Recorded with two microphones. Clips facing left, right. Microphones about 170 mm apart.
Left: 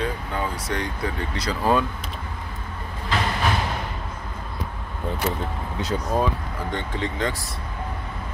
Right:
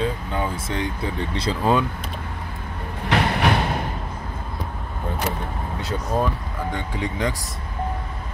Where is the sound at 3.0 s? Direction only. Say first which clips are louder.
Right 4 dB; 65° right (ahead or behind).